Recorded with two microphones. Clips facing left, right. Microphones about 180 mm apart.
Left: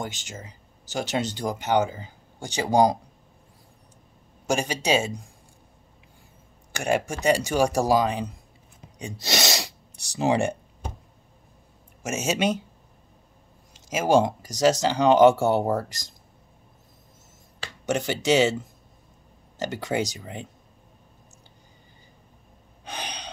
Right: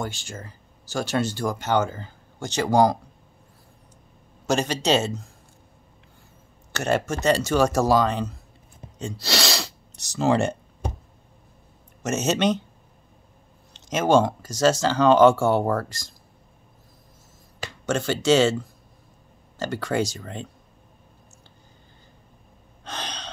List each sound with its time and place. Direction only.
0.0 s speech: 15° left (ahead or behind)
4.5 s speech: 10° left (ahead or behind)
6.7 s speech: 10° left (ahead or behind)
8.9 s gasp: 15° left (ahead or behind)
12.0 s speech: 10° left (ahead or behind)
13.7 s speech: 10° left (ahead or behind)
17.8 s speech: 15° left (ahead or behind)
22.8 s gasp: 15° left (ahead or behind)